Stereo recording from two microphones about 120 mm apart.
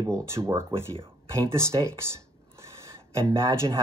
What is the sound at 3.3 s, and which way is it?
Speech, 20° right (ahead or behind).